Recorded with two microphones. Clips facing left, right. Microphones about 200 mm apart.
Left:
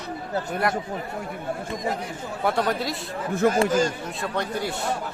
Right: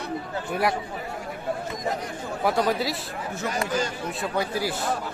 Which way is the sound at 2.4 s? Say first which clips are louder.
Right 1 dB; centre (ahead or behind).